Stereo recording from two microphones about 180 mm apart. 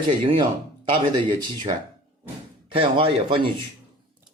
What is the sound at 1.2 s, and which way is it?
Speech, 25° right (ahead or behind).